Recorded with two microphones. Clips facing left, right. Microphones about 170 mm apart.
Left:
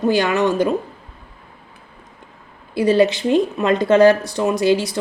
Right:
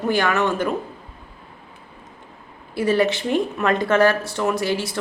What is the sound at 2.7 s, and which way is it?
Speech, 20° left (ahead or behind).